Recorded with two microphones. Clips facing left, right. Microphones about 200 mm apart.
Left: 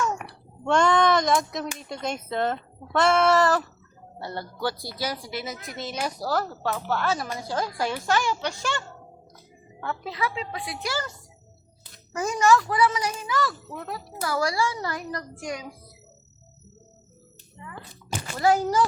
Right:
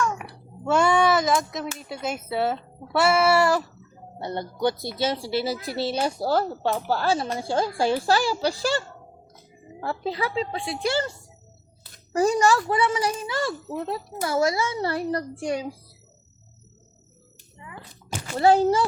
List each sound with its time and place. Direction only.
0.2 s a sound: centre (ahead or behind)
1.8 s speech: 5° right (ahead or behind)
4.2 s speech: 20° right (ahead or behind)
9.8 s speech: 30° right (ahead or behind)
12.1 s a child's voice: 35° right (ahead or behind)
18.3 s a child's voice: 30° right (ahead or behind)